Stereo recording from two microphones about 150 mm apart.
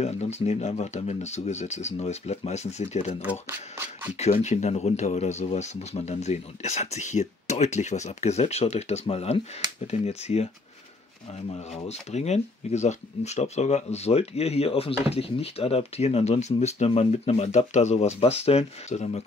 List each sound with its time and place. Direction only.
0.0 s speech: 45° left (ahead or behind)
3.2 s speech: 15° right (ahead or behind)
4.2 s speech: 50° left (ahead or behind)
11.7 s speech: 45° left (ahead or behind)